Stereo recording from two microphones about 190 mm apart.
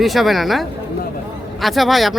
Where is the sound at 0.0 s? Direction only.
Centre (ahead or behind).